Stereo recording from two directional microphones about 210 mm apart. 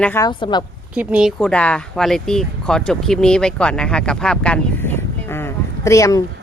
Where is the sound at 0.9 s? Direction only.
5° right (ahead or behind).